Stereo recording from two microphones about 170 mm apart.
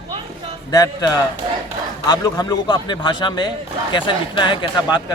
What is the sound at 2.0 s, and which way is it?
A man's voice, 20° left (ahead or behind).